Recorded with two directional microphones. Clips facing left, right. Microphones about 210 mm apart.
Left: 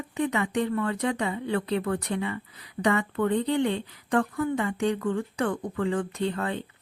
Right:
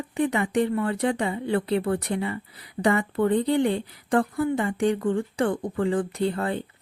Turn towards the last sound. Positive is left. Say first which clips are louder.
# right 3 dB
turn(degrees=-35)  # may be behind; listen again after turning